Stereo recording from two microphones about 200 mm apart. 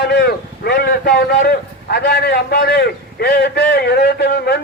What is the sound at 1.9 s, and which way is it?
A man's voice, 55° left (ahead or behind).